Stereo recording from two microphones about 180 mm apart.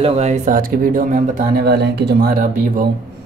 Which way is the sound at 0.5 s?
50° right (ahead or behind).